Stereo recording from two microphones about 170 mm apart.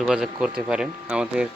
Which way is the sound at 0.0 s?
5° right (ahead or behind).